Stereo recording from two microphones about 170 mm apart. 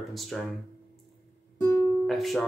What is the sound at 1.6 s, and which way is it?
Music, 15° left (ahead or behind).